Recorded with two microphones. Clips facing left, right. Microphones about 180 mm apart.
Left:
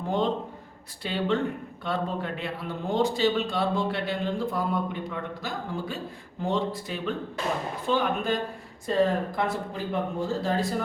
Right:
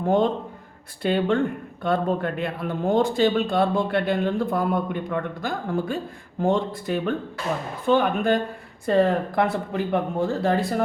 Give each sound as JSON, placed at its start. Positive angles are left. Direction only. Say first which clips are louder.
{"t": 0.0, "sound": "a man's voice", "louder": "right 6 dB", "side_deg": -50}